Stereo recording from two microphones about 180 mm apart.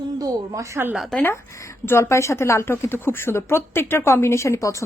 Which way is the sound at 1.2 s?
15° left (ahead or behind).